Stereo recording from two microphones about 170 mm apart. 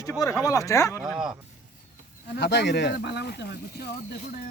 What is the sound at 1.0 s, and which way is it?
Speech, 5° right (ahead or behind).